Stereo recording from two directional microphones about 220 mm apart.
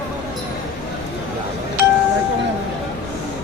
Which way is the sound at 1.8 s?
45° left (ahead or behind).